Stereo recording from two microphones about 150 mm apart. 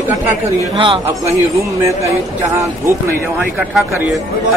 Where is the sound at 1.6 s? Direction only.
20° right (ahead or behind).